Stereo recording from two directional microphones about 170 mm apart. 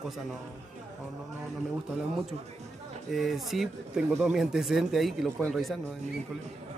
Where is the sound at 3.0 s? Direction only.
Centre (ahead or behind).